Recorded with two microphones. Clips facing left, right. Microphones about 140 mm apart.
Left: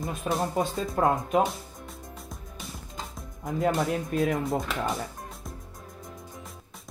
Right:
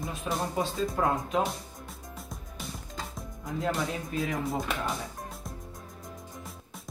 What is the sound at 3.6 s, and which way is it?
Speech, 60° left (ahead or behind).